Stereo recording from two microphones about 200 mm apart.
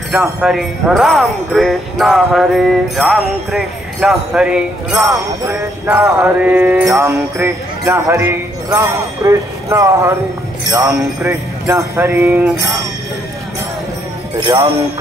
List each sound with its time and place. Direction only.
0.1 s speech: centre (ahead or behind)
5.4 s speech: 15° right (ahead or behind)
14.4 s speech: 15° right (ahead or behind)